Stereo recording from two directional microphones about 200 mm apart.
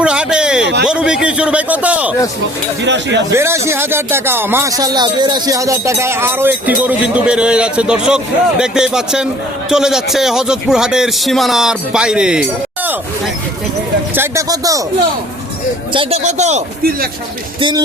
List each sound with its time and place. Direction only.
0.0 s a sound: 5° right (ahead or behind)
0.9 s a man's voice: 5° right (ahead or behind)
2.8 s speech: 60° right (ahead or behind)
3.3 s speech: 15° right (ahead or behind)
14.2 s speech: 15° right (ahead or behind)
15.9 s a man's voice: 25° right (ahead or behind)
17.6 s speech: 25° right (ahead or behind)